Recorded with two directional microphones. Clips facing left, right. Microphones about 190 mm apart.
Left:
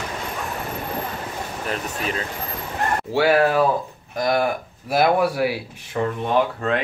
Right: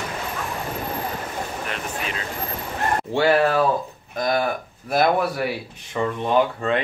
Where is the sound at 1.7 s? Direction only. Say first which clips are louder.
Left 3 dB; 40° left (ahead or behind).